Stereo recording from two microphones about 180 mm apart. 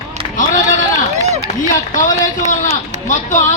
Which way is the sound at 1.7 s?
45° left (ahead or behind).